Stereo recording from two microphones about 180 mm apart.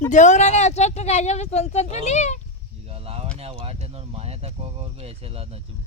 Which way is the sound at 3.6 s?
35° right (ahead or behind).